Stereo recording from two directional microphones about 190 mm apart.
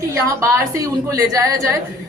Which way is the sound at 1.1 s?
15° right (ahead or behind).